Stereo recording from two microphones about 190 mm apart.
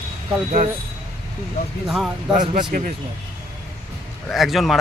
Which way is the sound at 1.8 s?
Centre (ahead or behind).